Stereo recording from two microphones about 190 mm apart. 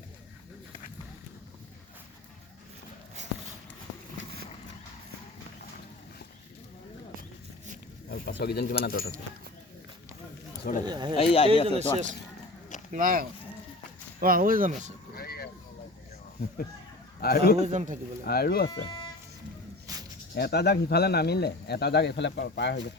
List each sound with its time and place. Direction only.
8.1 s speech: 60° left (ahead or behind)
10.6 s speech: 45° left (ahead or behind)
10.8 s speech: 25° right (ahead or behind)
11.2 s speech: 30° left (ahead or behind)
11.7 s a man's voice: 35° right (ahead or behind)
15.1 s vehicle: 55° left (ahead or behind)
17.2 s a man's voice: 55° left (ahead or behind)
17.6 s a man's voice: 40° right (ahead or behind)
18.3 s speech: 55° left (ahead or behind)
18.7 s speech: 25° left (ahead or behind)
19.9 s snake: 20° right (ahead or behind)
20.3 s speech: 60° left (ahead or behind)